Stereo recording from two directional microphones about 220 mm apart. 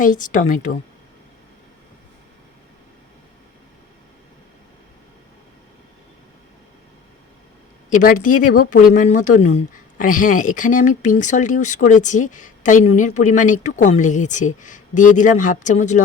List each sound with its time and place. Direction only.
0.0 s speech: 35° left (ahead or behind)
7.9 s speech: 35° left (ahead or behind)